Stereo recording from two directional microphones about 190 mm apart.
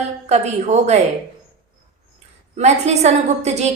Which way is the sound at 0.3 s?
35° right (ahead or behind).